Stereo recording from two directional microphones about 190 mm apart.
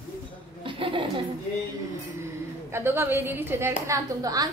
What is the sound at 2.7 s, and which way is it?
A woman's voice, 10° right (ahead or behind).